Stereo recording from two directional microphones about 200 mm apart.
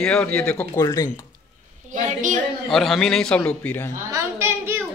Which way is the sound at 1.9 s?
40° right (ahead or behind).